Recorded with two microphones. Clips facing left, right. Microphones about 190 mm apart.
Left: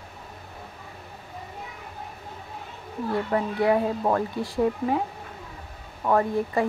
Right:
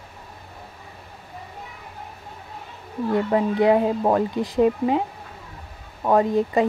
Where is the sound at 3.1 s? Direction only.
20° right (ahead or behind).